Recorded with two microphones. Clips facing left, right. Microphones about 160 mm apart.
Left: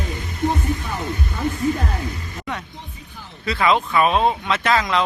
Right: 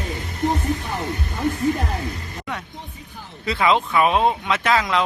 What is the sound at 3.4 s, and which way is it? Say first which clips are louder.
Speech: even; 20° right (ahead or behind).